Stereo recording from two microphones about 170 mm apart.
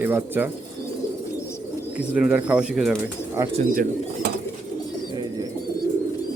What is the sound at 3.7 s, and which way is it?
Speech, 55° right (ahead or behind).